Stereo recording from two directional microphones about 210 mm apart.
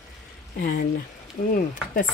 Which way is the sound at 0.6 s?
45° left (ahead or behind).